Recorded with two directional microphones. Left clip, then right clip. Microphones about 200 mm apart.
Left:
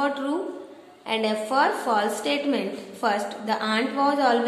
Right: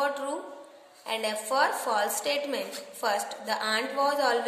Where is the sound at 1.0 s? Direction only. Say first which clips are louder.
Left 5 dB; 30° right (ahead or behind).